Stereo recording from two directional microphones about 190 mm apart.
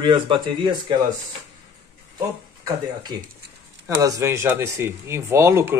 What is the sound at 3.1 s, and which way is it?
Speech, 20° right (ahead or behind).